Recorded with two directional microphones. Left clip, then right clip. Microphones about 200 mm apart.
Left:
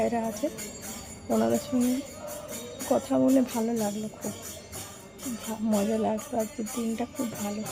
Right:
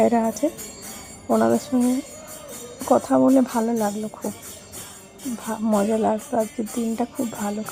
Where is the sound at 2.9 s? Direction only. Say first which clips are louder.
Right 7 dB; 25° right (ahead or behind).